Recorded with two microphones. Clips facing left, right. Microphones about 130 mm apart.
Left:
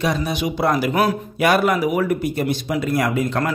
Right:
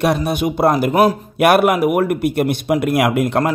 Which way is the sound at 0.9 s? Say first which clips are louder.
Right 5 dB; 30° right (ahead or behind).